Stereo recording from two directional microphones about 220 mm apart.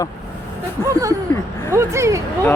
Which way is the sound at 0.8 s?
15° right (ahead or behind).